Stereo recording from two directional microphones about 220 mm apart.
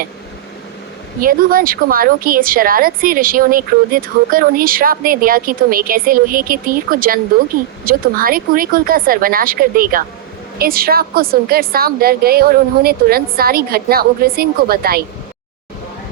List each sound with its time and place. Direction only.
1.2 s a woman's voice: 40° right (ahead or behind)